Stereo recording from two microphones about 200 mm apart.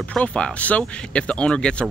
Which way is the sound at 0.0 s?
5° left (ahead or behind).